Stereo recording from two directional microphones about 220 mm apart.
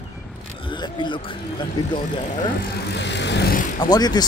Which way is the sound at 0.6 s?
20° left (ahead or behind).